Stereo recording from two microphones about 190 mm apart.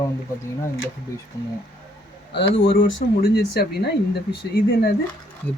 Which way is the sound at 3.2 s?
55° left (ahead or behind).